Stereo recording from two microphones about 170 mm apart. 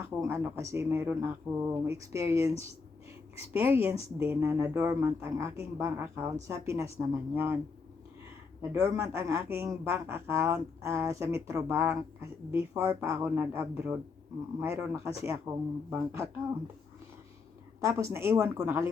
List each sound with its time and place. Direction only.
0.0 s a man's voice: 15° right (ahead or behind)
3.5 s a man's voice: 15° right (ahead or behind)
8.8 s a man's voice: 20° right (ahead or behind)
17.7 s a man's voice: 15° right (ahead or behind)